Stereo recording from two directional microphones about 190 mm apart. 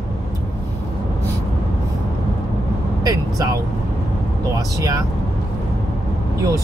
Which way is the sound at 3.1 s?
20° right (ahead or behind).